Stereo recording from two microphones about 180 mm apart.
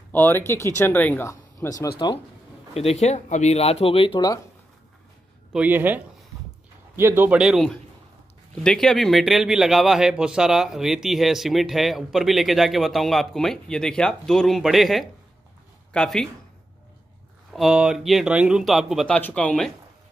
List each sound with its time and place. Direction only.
0.1 s speech: 10° left (ahead or behind)
2.7 s speech: 35° left (ahead or behind)
5.5 s a man's voice: 10° right (ahead or behind)
17.5 s a man's voice: centre (ahead or behind)